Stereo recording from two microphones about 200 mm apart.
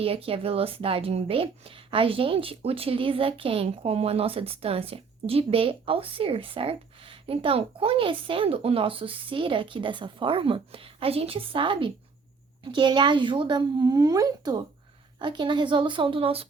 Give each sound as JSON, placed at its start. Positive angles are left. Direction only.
{"t": 0.0, "sound": "speech", "side_deg": -30}